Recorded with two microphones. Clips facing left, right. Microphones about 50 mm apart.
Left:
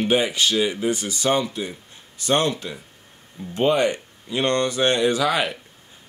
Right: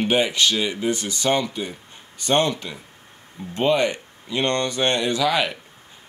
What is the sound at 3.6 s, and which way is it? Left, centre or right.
Speech, right.